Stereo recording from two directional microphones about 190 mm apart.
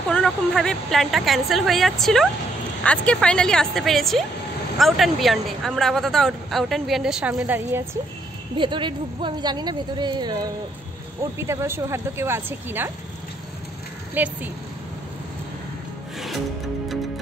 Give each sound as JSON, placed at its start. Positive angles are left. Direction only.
{"t": 0.1, "sound": "a woman's voice", "side_deg": 5}
{"t": 8.5, "sound": "a woman's voice", "side_deg": -25}
{"t": 14.1, "sound": "speech", "side_deg": -10}